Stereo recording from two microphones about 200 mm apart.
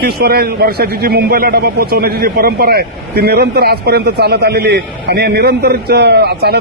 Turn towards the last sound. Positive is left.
turn(degrees=-55)  # may be behind; listen again after turning